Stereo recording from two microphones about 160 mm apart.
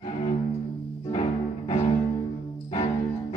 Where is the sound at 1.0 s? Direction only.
35° left (ahead or behind).